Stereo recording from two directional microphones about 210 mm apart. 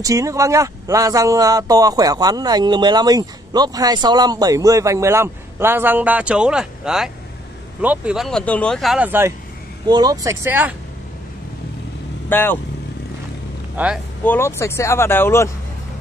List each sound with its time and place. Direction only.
0.0 s speech: 15° right (ahead or behind)
9.8 s speech: 20° right (ahead or behind)
12.3 s speech: 10° left (ahead or behind)
13.8 s speech: 10° right (ahead or behind)
14.2 s speech: 10° left (ahead or behind)